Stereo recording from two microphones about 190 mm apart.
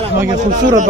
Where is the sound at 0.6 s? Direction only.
40° right (ahead or behind).